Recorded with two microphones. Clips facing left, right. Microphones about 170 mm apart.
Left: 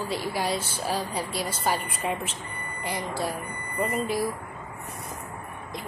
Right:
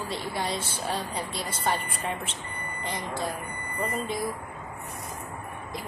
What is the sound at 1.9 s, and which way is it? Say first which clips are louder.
Speech: left 3 dB; 30° right (ahead or behind).